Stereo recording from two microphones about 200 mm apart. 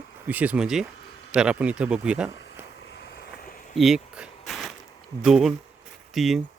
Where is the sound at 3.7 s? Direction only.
Centre (ahead or behind).